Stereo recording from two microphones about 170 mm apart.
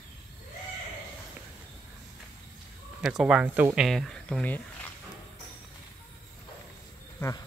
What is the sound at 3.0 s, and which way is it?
Speech, 5° right (ahead or behind).